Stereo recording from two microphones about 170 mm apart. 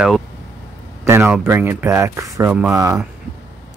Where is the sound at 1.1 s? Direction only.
15° right (ahead or behind).